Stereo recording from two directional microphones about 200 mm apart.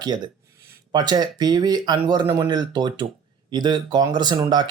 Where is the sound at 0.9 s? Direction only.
20° right (ahead or behind).